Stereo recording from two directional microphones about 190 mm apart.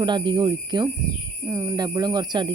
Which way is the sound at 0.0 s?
25° right (ahead or behind).